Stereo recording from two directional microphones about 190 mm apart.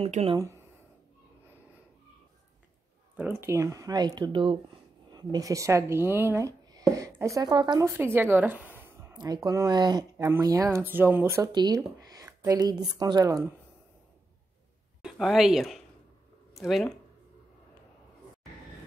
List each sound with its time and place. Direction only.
0.0 s speech: 30° right (ahead or behind)
3.2 s speech: 10° right (ahead or behind)
15.0 s speech: centre (ahead or behind)